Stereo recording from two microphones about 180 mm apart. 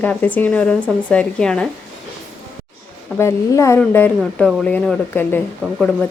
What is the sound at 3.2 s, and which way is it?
Speech, 15° left (ahead or behind).